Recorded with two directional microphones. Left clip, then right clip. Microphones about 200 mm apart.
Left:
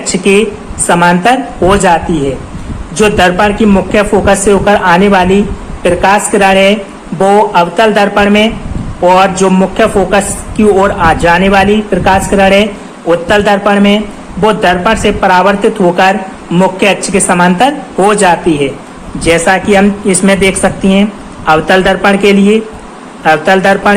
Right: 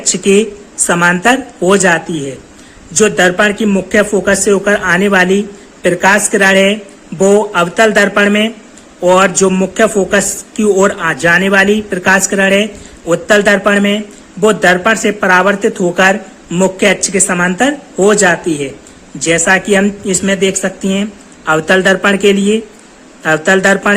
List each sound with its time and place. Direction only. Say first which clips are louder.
0.1 s speech: left 2 dB; 35° right (ahead or behind)